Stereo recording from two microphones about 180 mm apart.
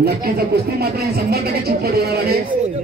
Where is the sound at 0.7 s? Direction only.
60° right (ahead or behind).